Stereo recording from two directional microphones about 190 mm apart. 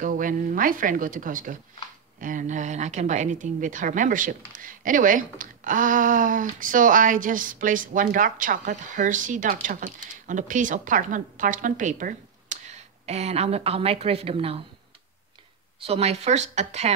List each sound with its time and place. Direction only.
0.0 s a woman's voice: 45° right (ahead or behind)
15.8 s a woman's voice: 30° right (ahead or behind)